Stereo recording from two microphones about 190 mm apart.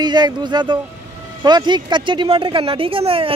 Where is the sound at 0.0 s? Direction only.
25° right (ahead or behind).